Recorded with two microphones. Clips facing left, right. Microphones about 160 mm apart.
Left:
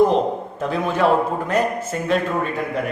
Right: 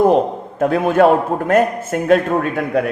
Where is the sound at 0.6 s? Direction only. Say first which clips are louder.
Right 7 dB; 55° right (ahead or behind).